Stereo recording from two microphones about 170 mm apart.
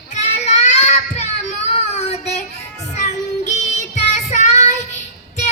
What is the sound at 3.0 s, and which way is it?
Child singing, 40° left (ahead or behind).